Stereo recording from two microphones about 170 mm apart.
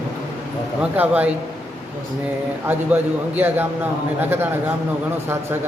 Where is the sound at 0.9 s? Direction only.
10° right (ahead or behind).